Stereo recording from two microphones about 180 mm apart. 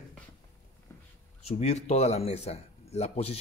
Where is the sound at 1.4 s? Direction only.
35° left (ahead or behind).